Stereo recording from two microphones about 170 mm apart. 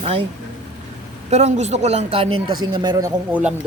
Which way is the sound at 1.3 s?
40° right (ahead or behind).